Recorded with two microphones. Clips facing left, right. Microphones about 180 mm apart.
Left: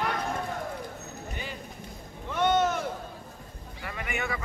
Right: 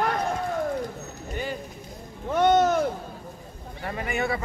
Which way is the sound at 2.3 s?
40° right (ahead or behind).